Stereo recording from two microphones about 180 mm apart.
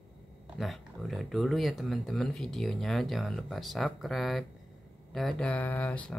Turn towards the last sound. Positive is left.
turn(degrees=5)  # may be behind; listen again after turning